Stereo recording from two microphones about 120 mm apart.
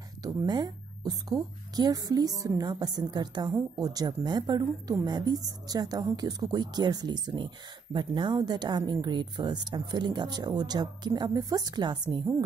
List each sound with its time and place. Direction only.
0.2 s a woman's voice: 35° right (ahead or behind)